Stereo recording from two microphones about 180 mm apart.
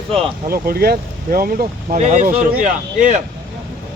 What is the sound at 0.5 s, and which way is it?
Speech, 55° right (ahead or behind).